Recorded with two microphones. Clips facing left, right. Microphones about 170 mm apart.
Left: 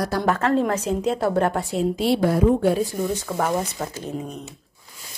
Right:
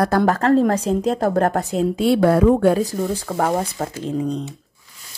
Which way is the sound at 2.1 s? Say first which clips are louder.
Right 5 dB; 65° right (ahead or behind).